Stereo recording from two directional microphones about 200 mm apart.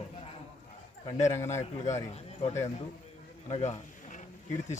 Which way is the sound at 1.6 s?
35° left (ahead or behind).